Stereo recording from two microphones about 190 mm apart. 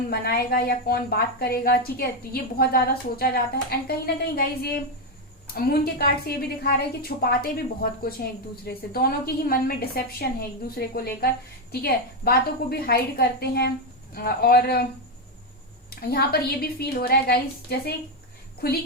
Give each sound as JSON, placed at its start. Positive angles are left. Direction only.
{"t": 0.1, "sound": "a woman's voice", "side_deg": 55}
{"t": 15.9, "sound": "a woman's voice", "side_deg": 55}